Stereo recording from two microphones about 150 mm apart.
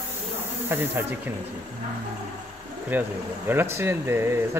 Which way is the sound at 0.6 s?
15° right (ahead or behind).